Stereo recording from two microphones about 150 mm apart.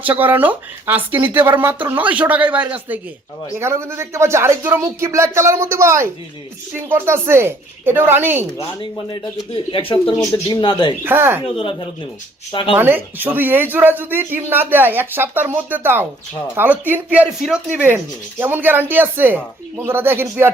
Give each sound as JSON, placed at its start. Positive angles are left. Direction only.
{"t": 0.0, "sound": "speech", "side_deg": -10}
{"t": 8.5, "sound": "speech", "side_deg": 35}
{"t": 11.0, "sound": "speech", "side_deg": -15}
{"t": 11.4, "sound": "speech", "side_deg": 35}
{"t": 12.7, "sound": "speech", "side_deg": -15}